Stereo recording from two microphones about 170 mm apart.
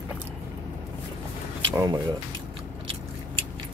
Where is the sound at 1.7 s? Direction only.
20° right (ahead or behind).